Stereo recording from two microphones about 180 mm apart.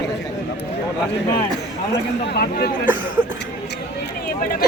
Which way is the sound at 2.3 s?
60° left (ahead or behind).